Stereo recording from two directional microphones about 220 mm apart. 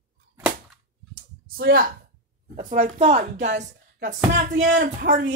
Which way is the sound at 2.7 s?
30° right (ahead or behind).